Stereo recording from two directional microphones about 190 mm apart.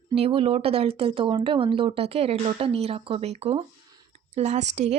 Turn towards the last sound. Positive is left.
turn(degrees=-35)  # may be behind; listen again after turning